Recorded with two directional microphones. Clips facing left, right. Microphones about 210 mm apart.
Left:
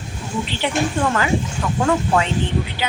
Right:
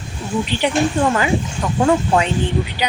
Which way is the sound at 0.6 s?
15° right (ahead or behind).